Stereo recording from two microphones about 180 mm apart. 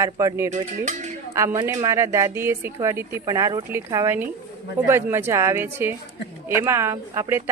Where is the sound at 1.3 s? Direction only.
15° right (ahead or behind).